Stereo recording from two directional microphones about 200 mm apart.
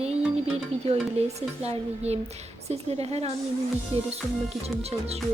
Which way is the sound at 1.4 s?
30° right (ahead or behind).